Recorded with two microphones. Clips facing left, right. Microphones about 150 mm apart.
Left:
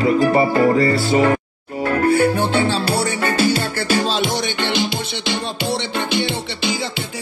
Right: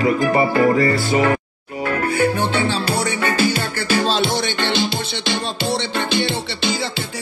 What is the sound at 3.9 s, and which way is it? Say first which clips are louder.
Music: right 1 dB; 10° left (ahead or behind).